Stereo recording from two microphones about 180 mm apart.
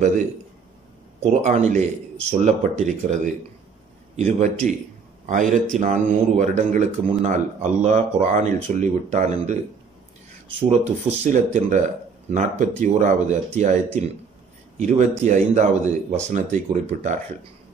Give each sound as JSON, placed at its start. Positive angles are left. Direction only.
{"t": 1.2, "sound": "a man's voice", "side_deg": -40}
{"t": 10.7, "sound": "speech", "side_deg": -40}